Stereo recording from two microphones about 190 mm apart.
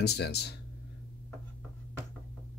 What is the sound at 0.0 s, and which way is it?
Speech, 60° left (ahead or behind).